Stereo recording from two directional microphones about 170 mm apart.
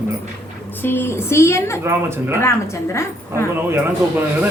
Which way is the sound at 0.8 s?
15° left (ahead or behind).